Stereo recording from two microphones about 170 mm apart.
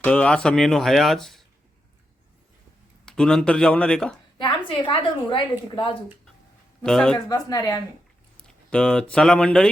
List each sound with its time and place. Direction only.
0.0 s speech: 5° left (ahead or behind)
3.1 s speech: 5° left (ahead or behind)
4.4 s a woman's voice: 30° left (ahead or behind)
6.8 s speech: 5° left (ahead or behind)
7.3 s a woman's voice: 20° left (ahead or behind)
8.4 s speech: 5° left (ahead or behind)